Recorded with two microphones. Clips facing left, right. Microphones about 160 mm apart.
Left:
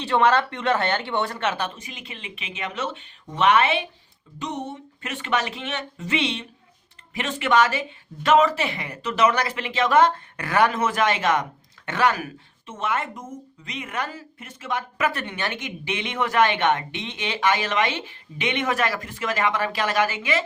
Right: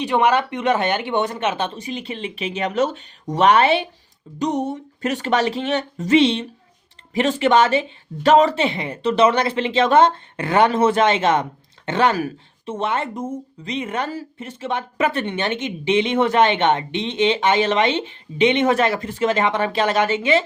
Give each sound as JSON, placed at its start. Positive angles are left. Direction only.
{"t": 0.0, "sound": "speech", "side_deg": -15}